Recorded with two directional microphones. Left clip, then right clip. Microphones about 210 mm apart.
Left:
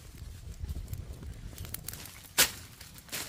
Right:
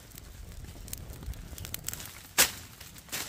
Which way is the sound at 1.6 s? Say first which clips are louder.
Right 4 dB; centre (ahead or behind).